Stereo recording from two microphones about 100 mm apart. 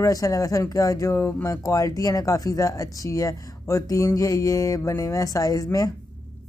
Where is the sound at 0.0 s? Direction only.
35° left (ahead or behind).